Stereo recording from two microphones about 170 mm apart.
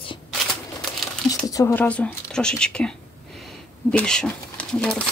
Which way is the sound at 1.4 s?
20° left (ahead or behind).